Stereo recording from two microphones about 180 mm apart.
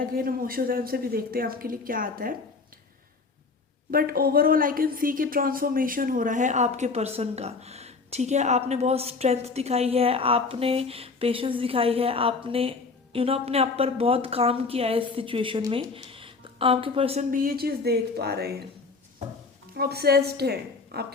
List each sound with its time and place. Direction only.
0.2 s speech: 55° right (ahead or behind)
3.9 s a woman's voice: 55° right (ahead or behind); by 17.2 s 30° right (ahead or behind)
17.3 s a woman's voice: 55° right (ahead or behind)
19.7 s a woman's voice: 60° right (ahead or behind)